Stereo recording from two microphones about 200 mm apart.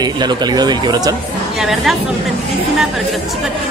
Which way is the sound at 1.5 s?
Centre (ahead or behind).